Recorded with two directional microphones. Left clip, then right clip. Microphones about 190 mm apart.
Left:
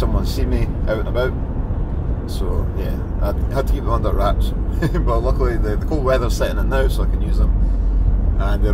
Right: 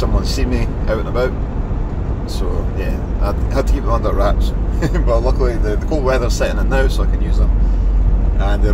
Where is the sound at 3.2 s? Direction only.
5° left (ahead or behind).